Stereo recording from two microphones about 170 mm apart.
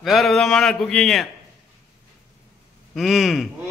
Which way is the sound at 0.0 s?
Centre (ahead or behind).